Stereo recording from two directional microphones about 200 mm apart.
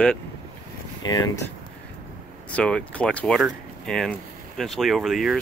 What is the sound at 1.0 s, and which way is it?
Speech, 20° left (ahead or behind).